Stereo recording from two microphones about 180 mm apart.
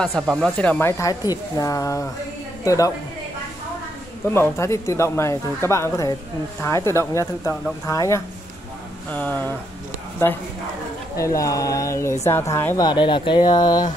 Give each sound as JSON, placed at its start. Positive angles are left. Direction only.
{"t": 0.0, "sound": "a woman's voice", "side_deg": 0}
{"t": 4.3, "sound": "speech", "side_deg": 15}
{"t": 11.1, "sound": "speech", "side_deg": 20}